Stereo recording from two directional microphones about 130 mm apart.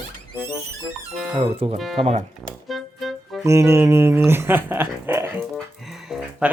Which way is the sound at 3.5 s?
20° right (ahead or behind).